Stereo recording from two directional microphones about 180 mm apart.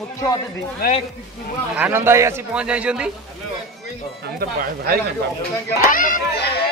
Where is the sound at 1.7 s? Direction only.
10° right (ahead or behind).